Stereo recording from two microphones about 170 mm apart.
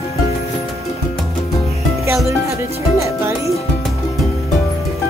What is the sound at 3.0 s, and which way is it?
Music, 15° right (ahead or behind).